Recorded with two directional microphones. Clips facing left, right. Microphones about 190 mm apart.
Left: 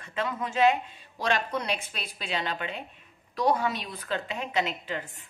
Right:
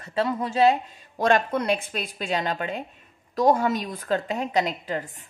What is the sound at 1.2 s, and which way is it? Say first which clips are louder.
A woman's voice: right 7 dB; 50° right (ahead or behind).